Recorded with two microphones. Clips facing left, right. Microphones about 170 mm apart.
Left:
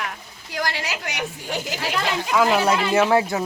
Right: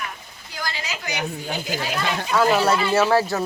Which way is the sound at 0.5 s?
75° left (ahead or behind).